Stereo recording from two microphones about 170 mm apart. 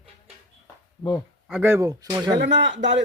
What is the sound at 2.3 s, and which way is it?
Speech, 85° right.